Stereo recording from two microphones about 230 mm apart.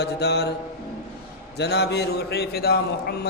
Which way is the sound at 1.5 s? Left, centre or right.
Left.